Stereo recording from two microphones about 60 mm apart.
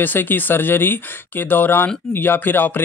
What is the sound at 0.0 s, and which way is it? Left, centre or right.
Speech, left.